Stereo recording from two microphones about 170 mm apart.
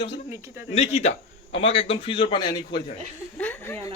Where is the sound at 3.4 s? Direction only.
10° left (ahead or behind).